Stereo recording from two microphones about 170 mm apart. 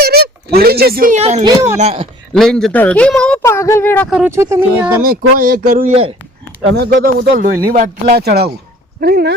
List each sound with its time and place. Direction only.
0.0 s a sound: 65° right (ahead or behind)
1.1 s speech: 40° right (ahead or behind)
1.5 s speech: 20° right (ahead or behind)
1.8 s speech: 35° right (ahead or behind)
2.3 s speech: 5° left (ahead or behind)
3.4 s speech: 15° left (ahead or behind)
4.1 s speech: 10° right (ahead or behind)
5.4 s speech: 55° right (ahead or behind)
5.9 s speech: 35° right (ahead or behind)
6.7 s speech: 60° right (ahead or behind)